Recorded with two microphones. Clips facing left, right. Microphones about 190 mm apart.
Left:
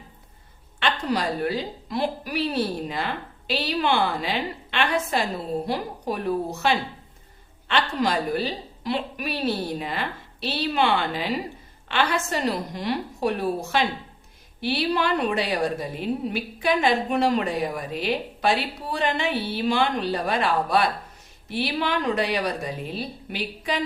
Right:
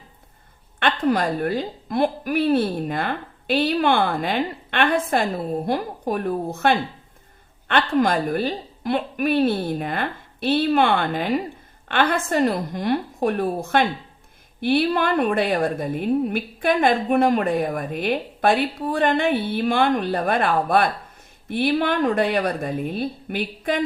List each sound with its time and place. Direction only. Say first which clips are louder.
0.8 s a woman's voice: right 5 dB; 55° right (ahead or behind)